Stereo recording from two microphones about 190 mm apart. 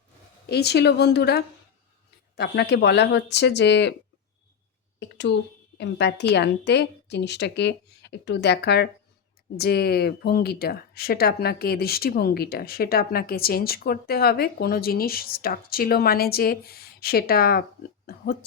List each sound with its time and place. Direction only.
0.4 s a woman's voice: 60° left (ahead or behind)
4.9 s a woman's voice: 65° left (ahead or behind)